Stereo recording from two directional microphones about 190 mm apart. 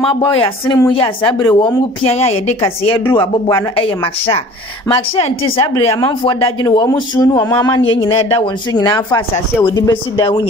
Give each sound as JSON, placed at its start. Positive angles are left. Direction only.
{"t": 0.1, "sound": "speech", "side_deg": 25}